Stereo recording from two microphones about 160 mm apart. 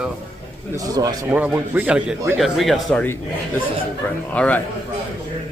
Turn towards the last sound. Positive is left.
turn(degrees=10)  # may be behind; listen again after turning